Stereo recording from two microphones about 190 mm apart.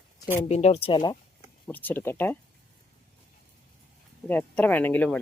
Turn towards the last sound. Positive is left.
turn(degrees=10)  # may be behind; listen again after turning